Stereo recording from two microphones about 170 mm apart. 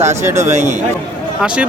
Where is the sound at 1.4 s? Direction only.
5° right (ahead or behind).